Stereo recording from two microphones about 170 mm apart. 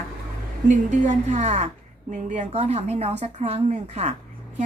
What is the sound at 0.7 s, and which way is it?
A woman's voice, 45° right (ahead or behind).